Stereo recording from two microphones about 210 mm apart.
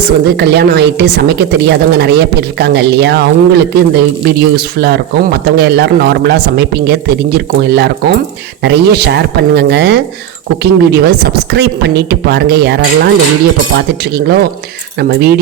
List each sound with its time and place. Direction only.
0.0 s a woman's voice: 50° right (ahead or behind)